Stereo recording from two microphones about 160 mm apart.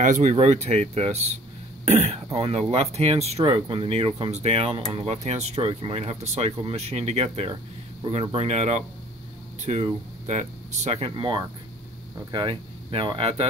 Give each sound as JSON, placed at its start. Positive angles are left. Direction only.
{"t": 0.0, "sound": "speech", "side_deg": -50}